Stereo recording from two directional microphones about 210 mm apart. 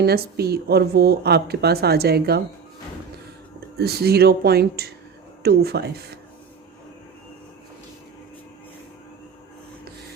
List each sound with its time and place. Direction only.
0.0 s a woman's voice: 50° right (ahead or behind)
3.8 s a woman's voice: 50° right (ahead or behind)